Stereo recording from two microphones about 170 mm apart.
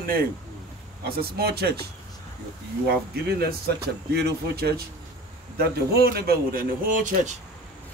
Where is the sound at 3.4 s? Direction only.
65° right (ahead or behind).